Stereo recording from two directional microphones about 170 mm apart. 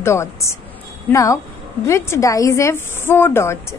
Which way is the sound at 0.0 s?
15° left (ahead or behind).